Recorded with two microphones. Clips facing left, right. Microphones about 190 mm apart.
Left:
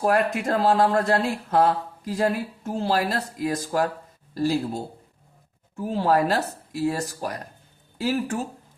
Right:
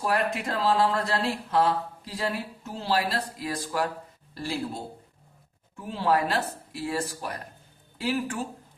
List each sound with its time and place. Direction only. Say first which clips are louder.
0.0 s speech: left 5 dB; 45° left (ahead or behind)